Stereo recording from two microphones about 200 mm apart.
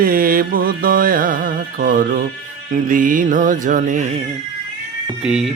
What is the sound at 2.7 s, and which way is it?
Mantra, 40° right (ahead or behind).